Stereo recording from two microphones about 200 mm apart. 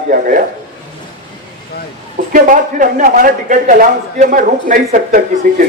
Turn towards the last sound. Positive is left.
turn(degrees=-40)  # may be behind; listen again after turning